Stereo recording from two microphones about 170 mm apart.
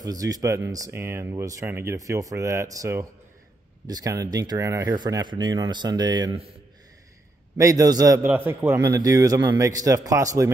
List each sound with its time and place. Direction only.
0.0 s speech: 20° right (ahead or behind)
7.5 s speech: 20° right (ahead or behind)